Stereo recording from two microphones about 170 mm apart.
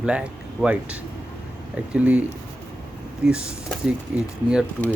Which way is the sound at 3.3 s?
5° right (ahead or behind).